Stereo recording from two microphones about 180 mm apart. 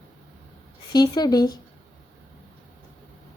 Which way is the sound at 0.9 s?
20° left (ahead or behind).